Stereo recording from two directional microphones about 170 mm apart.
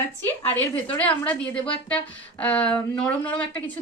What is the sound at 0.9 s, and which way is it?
A woman's voice, 10° left (ahead or behind).